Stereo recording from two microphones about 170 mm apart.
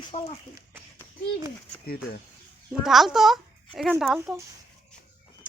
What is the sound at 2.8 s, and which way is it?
A child's voice, centre (ahead or behind).